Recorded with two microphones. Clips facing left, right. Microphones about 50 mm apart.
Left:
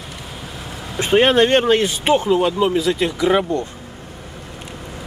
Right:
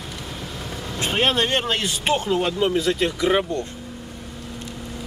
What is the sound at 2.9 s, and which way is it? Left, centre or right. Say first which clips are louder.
Speech: left 3 dB; centre.